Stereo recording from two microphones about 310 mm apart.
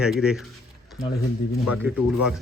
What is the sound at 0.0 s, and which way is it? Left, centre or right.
Speech, centre.